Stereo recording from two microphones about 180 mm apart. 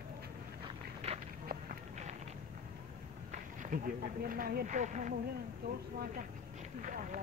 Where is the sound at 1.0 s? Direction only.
35° right (ahead or behind).